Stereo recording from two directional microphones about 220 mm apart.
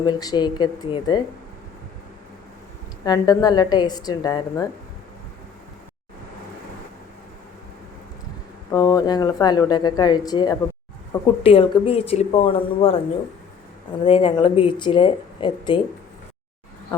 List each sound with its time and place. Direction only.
0.0 s speech: 20° left (ahead or behind)
3.0 s speech: 15° left (ahead or behind)
8.7 s speech: 15° left (ahead or behind)
14.0 s speech: 25° left (ahead or behind)